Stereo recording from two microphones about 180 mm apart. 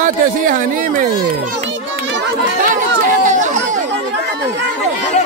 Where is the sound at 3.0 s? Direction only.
45° right (ahead or behind).